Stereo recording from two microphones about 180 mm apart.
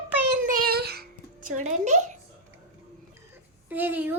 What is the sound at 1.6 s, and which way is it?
Speech, 40° right (ahead or behind).